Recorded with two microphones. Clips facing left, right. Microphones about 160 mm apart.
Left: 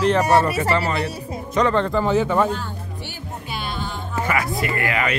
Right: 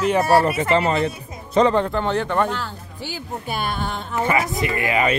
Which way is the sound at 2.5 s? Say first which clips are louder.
Left 1 dB; 85° right.